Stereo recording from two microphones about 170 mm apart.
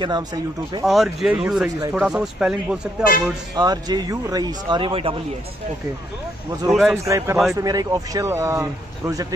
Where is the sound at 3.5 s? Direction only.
25° right (ahead or behind).